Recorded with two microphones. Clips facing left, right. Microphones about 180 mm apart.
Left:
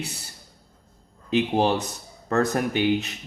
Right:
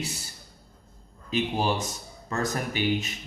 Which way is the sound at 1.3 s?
65° left (ahead or behind).